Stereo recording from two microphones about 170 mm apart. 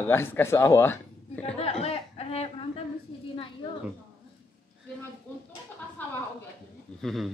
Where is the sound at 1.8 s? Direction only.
35° left (ahead or behind).